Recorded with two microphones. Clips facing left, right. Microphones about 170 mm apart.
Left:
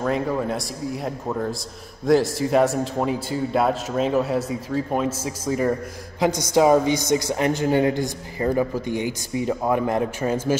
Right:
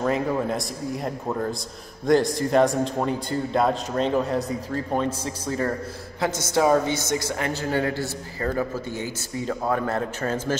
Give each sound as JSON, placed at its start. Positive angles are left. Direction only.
{"t": 0.0, "sound": "a man's voice", "side_deg": 0}